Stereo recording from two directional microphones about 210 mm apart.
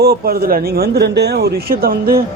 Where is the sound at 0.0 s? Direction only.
45° right (ahead or behind).